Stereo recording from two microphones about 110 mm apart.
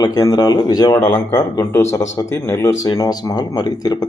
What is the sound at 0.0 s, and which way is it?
Speech, 35° left (ahead or behind).